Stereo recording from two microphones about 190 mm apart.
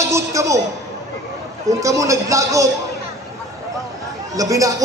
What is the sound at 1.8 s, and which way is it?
Speech, 15° right (ahead or behind).